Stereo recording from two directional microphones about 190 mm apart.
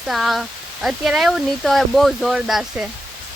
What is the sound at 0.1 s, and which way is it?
Speech, centre (ahead or behind).